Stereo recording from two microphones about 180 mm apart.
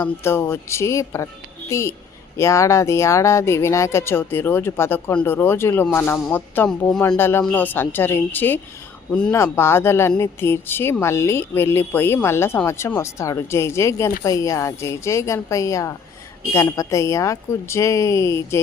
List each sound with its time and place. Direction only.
0.0 s speech: 15° left (ahead or behind)